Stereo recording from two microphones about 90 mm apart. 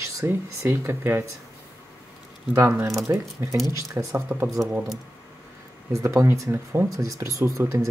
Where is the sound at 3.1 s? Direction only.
40° right (ahead or behind).